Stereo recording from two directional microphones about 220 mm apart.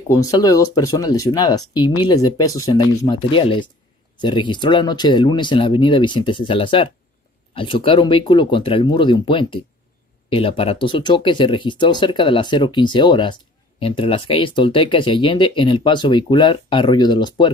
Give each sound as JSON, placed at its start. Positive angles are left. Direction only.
{"t": 0.1, "sound": "speech", "side_deg": 15}